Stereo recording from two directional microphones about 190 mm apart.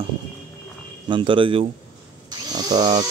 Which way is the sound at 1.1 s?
25° right (ahead or behind).